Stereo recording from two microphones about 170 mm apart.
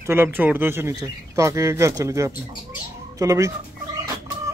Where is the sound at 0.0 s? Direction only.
15° right (ahead or behind).